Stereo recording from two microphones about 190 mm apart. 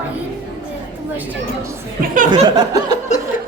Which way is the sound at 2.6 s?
20° right (ahead or behind).